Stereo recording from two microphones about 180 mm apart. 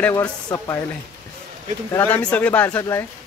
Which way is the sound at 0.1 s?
20° left (ahead or behind).